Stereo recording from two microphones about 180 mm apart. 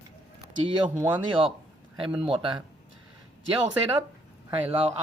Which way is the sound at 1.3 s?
30° right (ahead or behind).